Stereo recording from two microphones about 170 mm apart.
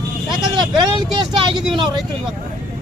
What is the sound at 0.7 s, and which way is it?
Speech, 25° right (ahead or behind).